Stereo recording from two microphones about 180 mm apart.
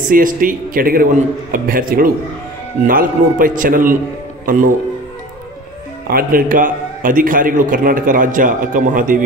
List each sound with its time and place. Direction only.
0.1 s a man's voice: 50° right (ahead or behind)
6.0 s a man's voice: 55° right (ahead or behind)